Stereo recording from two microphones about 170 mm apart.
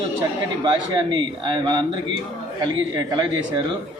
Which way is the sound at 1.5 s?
25° right (ahead or behind).